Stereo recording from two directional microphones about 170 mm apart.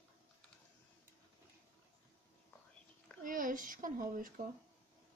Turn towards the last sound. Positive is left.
turn(degrees=-55)  # may be behind; listen again after turning